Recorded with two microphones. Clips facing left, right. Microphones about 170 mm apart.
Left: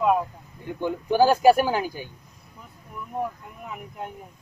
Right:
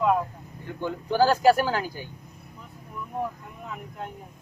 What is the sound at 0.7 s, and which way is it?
Speech, 15° left (ahead or behind).